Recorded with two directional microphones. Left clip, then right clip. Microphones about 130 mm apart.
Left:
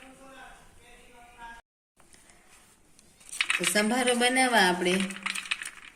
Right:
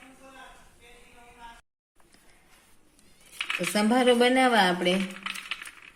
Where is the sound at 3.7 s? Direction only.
55° right (ahead or behind).